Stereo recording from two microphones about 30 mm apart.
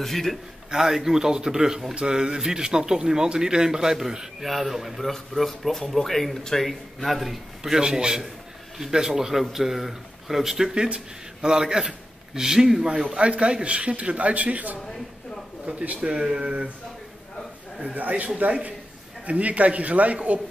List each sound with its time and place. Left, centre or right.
0.0 s speech: centre
0.8 s speech: centre
4.4 s a man's voice: centre
5.1 s a man's voice: centre
7.7 s speech: right
10.5 s speech: right
13.2 s a man's voice: right
16.0 s speech: right
16.3 s a man's voice: right
18.4 s speech: right